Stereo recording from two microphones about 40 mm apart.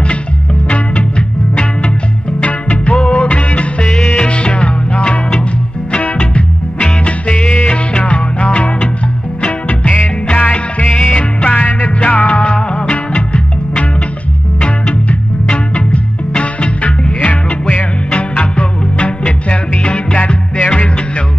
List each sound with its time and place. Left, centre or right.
0.7 s music: left
3.8 s music: left
12.4 s music: left
15.7 s music: left